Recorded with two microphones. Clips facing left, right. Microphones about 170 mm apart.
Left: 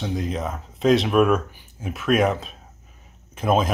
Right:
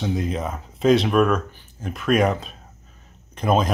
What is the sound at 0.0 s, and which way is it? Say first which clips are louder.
Speech: right 2 dB; centre (ahead or behind).